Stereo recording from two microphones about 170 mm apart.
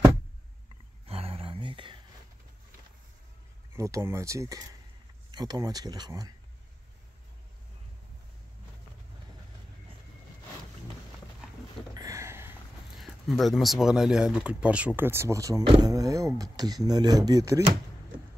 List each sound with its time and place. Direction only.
1.0 s a sound: 35° right (ahead or behind)
3.7 s speech: 15° right (ahead or behind)
11.9 s a sound: 20° right (ahead or behind)
12.9 s speech: centre (ahead or behind); by 15.6 s 20° right (ahead or behind)
15.6 s speech: 30° right (ahead or behind)
15.9 s speech: 20° right (ahead or behind)